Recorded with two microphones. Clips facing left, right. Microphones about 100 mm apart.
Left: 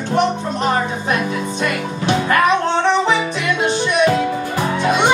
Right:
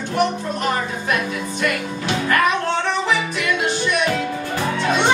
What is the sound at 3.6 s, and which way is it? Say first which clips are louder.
Music: left 7 dB; 20° left (ahead or behind).